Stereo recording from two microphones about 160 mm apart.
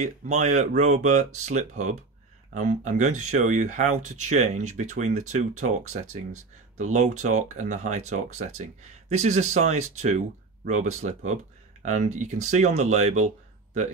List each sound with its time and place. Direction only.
0.0 s speech: 45° right (ahead or behind)
6.8 s speech: 50° right (ahead or behind)